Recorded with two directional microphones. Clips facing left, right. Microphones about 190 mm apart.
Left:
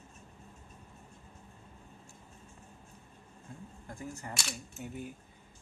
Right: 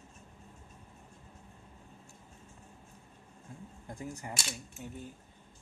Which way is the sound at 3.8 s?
15° right (ahead or behind).